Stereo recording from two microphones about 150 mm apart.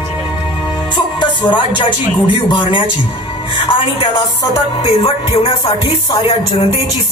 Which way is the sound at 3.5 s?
35° left (ahead or behind).